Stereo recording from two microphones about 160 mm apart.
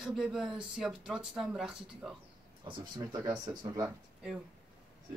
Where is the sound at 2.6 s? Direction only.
25° right (ahead or behind).